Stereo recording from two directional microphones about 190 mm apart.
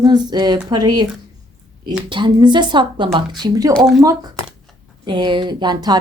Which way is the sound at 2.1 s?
25° right (ahead or behind).